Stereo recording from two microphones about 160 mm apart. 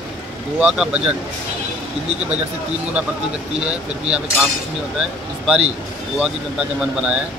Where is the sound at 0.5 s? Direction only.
5° right (ahead or behind).